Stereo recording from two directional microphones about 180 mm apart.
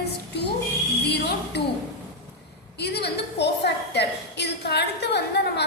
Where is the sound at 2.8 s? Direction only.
65° left (ahead or behind).